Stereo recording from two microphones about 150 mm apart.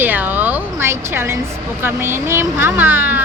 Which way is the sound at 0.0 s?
10° right (ahead or behind).